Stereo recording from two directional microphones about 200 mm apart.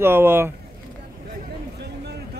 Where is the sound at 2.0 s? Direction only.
55° right (ahead or behind).